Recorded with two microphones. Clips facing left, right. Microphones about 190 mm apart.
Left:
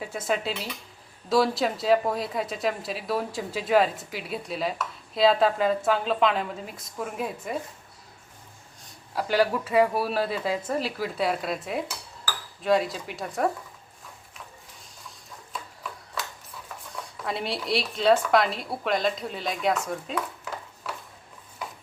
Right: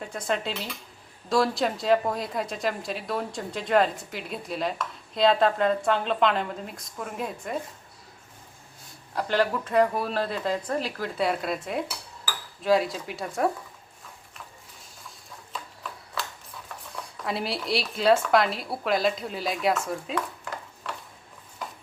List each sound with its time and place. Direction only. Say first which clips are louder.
0.0 s a woman's voice: left 1 dB; 5° left (ahead or behind)
9.1 s a woman's voice: left 1 dB; 5° left (ahead or behind)
15.5 s a sound: left 1 dB; 5° left (ahead or behind)
16.9 s speech: right 1 dB; centre (ahead or behind)